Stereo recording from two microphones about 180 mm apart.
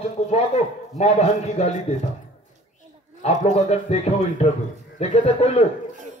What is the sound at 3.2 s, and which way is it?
A man's voice, 35° left (ahead or behind).